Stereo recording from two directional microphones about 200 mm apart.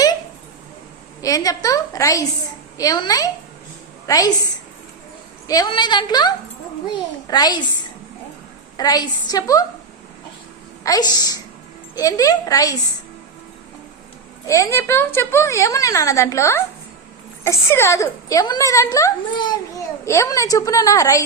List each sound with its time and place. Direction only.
1.2 s a woman's voice: 15° left (ahead or behind)
5.5 s a woman's voice: 20° left (ahead or behind)
8.8 s a woman's voice: 20° left (ahead or behind)
10.8 s a woman's voice: 20° left (ahead or behind)
14.4 s a woman's voice: 15° left (ahead or behind)